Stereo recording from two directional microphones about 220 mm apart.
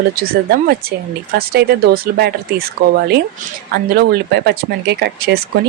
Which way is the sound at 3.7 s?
45° right (ahead or behind).